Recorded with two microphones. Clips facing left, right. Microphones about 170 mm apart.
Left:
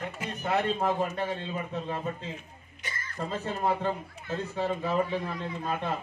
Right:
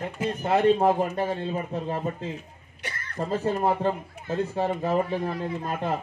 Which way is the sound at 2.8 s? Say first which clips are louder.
Right 3 dB; 65° right (ahead or behind).